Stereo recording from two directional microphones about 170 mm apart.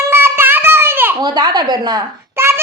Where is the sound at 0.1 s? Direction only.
15° right (ahead or behind).